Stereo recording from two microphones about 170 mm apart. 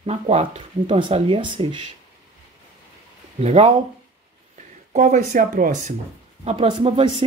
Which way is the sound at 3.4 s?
35° right (ahead or behind).